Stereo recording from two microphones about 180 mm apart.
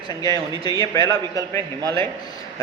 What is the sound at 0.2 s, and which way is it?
A man's voice, 20° left (ahead or behind).